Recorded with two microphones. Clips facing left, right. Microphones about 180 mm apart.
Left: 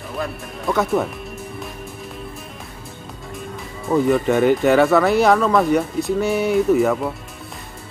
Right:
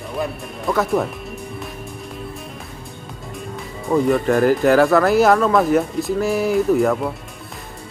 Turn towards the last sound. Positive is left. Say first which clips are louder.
# even
turn(degrees=0)  # may be behind; listen again after turning